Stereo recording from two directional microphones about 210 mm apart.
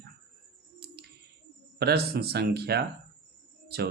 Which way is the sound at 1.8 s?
50° right (ahead or behind).